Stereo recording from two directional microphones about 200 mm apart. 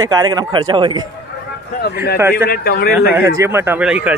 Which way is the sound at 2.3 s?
50° left (ahead or behind).